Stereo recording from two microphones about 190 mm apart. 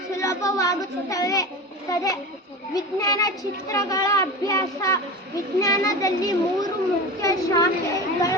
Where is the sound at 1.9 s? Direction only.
20° left (ahead or behind).